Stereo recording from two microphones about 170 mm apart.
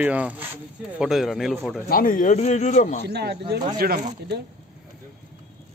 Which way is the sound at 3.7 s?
55° right (ahead or behind).